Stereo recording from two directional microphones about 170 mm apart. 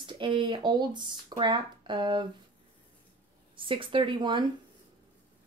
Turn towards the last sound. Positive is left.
turn(degrees=-25)  # may be behind; listen again after turning